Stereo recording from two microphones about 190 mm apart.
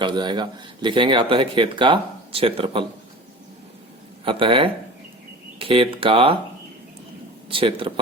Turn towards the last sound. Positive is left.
turn(degrees=-30)  # may be behind; listen again after turning